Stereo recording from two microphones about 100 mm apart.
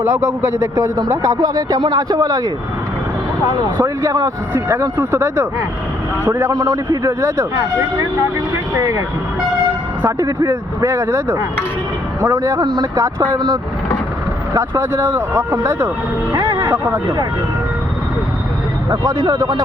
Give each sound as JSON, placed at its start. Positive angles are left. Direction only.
{"t": 0.0, "sound": "speech", "side_deg": -25}
{"t": 3.8, "sound": "speech", "side_deg": -30}
{"t": 6.5, "sound": "speech", "side_deg": -35}
{"t": 10.1, "sound": "speech", "side_deg": -35}
{"t": 12.3, "sound": "speech", "side_deg": -40}
{"t": 13.0, "sound": "speech", "side_deg": -30}
{"t": 14.5, "sound": "speech", "side_deg": -30}
{"t": 16.3, "sound": "music", "side_deg": -45}
{"t": 19.2, "sound": "speech", "side_deg": -40}